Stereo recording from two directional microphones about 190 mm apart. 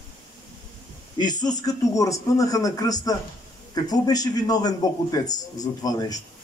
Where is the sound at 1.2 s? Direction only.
20° left (ahead or behind).